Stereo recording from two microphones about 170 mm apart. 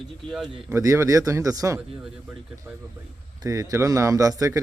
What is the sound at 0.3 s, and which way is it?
Speech, centre (ahead or behind).